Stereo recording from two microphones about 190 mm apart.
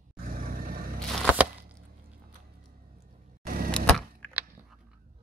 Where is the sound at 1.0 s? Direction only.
5° right (ahead or behind).